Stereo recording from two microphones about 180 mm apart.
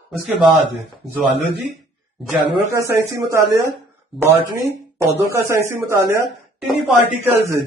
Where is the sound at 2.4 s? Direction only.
15° right (ahead or behind).